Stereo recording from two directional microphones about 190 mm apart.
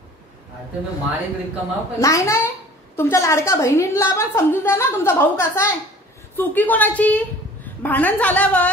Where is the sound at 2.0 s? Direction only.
15° left (ahead or behind).